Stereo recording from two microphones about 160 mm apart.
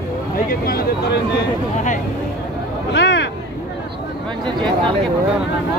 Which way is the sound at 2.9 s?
90° left.